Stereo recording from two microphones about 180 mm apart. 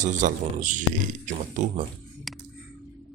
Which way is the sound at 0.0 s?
45° right (ahead or behind).